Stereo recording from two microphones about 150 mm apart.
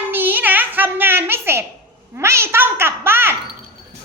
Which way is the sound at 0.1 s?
10° right (ahead or behind).